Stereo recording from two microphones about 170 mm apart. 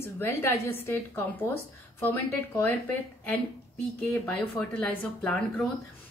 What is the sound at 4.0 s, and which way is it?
A woman's voice, 5° left (ahead or behind).